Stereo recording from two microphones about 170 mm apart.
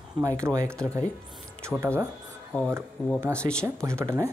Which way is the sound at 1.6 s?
15° right (ahead or behind).